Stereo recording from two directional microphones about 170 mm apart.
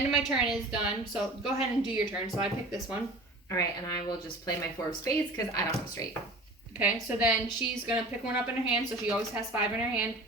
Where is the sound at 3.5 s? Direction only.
20° left (ahead or behind).